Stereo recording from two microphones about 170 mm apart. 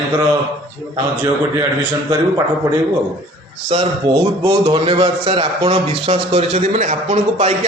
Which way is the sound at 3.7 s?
35° right (ahead or behind).